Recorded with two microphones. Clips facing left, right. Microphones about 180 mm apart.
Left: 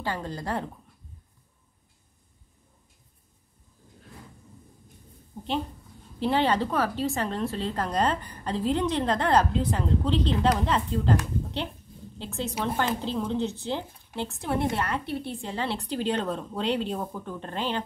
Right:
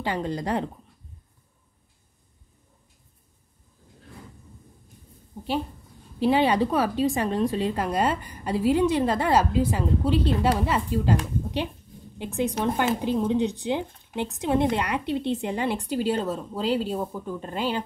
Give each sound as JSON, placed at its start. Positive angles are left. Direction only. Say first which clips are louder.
{"t": 0.0, "sound": "a woman's voice", "louder": "right 4 dB", "side_deg": -15}
{"t": 6.1, "sound": "a woman's voice", "louder": "right 3 dB", "side_deg": -10}